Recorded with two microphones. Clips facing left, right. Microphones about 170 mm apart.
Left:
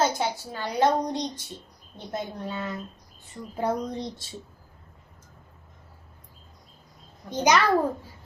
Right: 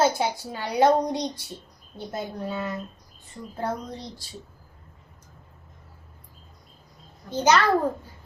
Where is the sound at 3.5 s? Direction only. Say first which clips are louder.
Left 3 dB; 15° left (ahead or behind).